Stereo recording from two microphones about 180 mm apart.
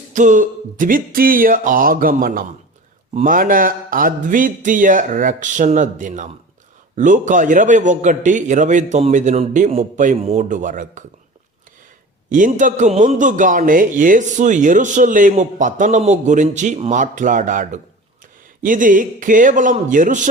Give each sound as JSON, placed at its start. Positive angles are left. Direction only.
{"t": 0.1, "sound": "a man's voice", "side_deg": -45}
{"t": 12.3, "sound": "a man's voice", "side_deg": -45}